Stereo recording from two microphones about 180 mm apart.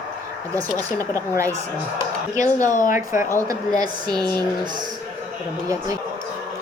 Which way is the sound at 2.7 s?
45° left (ahead or behind).